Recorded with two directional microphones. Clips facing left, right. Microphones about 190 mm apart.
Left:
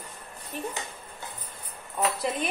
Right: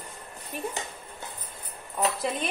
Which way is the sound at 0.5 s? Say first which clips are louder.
Right 1 dB; 10° right (ahead or behind).